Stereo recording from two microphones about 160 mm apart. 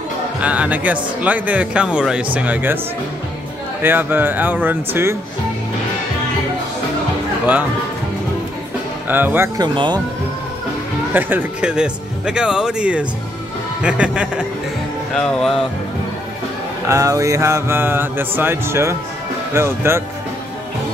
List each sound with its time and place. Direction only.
0.4 s mantra: 10° right (ahead or behind)
3.8 s mantra: 10° right (ahead or behind)
9.1 s mantra: 10° right (ahead or behind)
9.6 s speech: 30° right (ahead or behind)
11.1 s speech: 10° right (ahead or behind)
13.8 s mantra: 5° right (ahead or behind)
15.1 s speech: 5° left (ahead or behind)
16.8 s mantra: 20° right (ahead or behind)